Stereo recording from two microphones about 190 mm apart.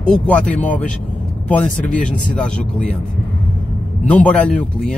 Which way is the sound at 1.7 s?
45° left (ahead or behind).